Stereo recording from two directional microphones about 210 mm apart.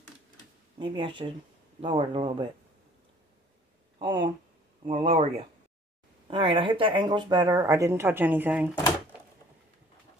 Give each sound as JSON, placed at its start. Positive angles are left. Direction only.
{"t": 0.7, "sound": "a man's voice", "side_deg": -25}
{"t": 4.0, "sound": "a man's voice", "side_deg": -20}